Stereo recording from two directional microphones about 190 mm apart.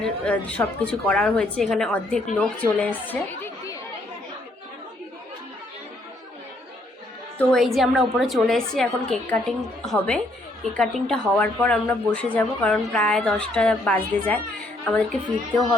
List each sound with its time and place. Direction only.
0.0 s a woman's voice: 5° left (ahead or behind)
7.3 s a woman's voice: centre (ahead or behind)